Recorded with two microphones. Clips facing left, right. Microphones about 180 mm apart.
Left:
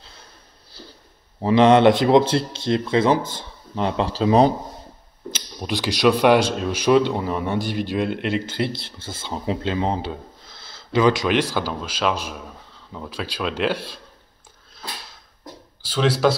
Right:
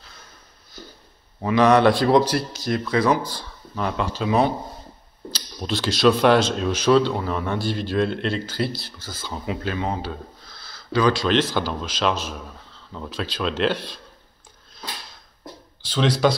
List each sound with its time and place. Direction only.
0.7 s a sound: 30° left (ahead or behind)
1.4 s speech: 25° left (ahead or behind)
5.3 s a man's voice: 15° left (ahead or behind)
15.8 s a man's voice: 5° left (ahead or behind)